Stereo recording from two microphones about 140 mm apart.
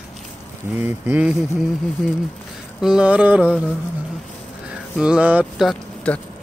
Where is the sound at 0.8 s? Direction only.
10° right (ahead or behind).